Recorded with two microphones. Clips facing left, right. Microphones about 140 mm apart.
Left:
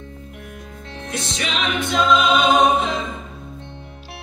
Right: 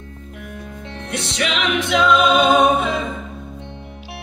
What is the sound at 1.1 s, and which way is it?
Music, 75° right (ahead or behind).